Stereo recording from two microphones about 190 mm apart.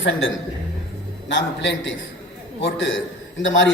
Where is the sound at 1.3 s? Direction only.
70° left (ahead or behind).